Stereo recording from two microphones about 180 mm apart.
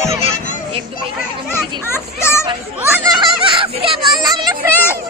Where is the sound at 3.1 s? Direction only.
25° right (ahead or behind).